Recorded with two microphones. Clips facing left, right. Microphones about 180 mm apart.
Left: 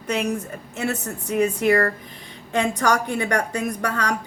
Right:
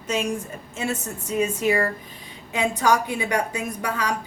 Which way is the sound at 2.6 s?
80° left.